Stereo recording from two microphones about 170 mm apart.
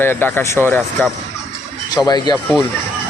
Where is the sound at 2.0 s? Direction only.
25° left (ahead or behind).